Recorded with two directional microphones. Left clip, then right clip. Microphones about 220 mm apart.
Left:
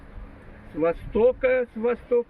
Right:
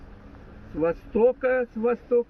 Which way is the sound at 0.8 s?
20° right (ahead or behind).